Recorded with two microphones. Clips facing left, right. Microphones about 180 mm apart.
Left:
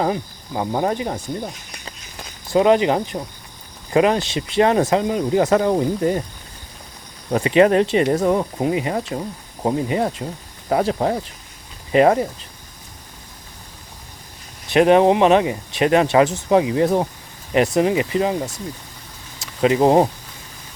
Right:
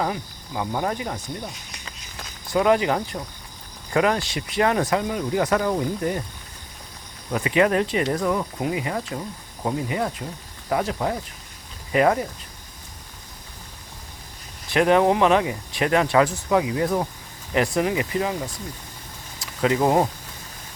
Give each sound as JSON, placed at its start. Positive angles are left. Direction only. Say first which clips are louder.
{"t": 0.0, "sound": "speech", "louder": "left 5 dB", "side_deg": 30}
{"t": 2.5, "sound": "speech", "louder": "left 4 dB", "side_deg": 25}
{"t": 7.3, "sound": "speech", "louder": "left 6 dB", "side_deg": 30}
{"t": 14.7, "sound": "speech", "louder": "left 5 dB", "side_deg": 20}